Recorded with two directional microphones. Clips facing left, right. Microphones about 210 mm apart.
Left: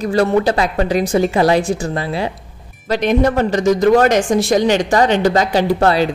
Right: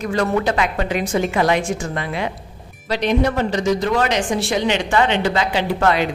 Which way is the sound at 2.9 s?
50° left (ahead or behind).